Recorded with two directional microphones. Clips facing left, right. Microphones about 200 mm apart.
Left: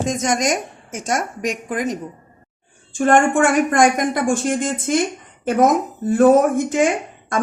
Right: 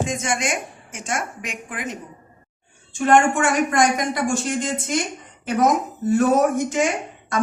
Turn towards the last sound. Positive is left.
turn(degrees=50)  # may be behind; listen again after turning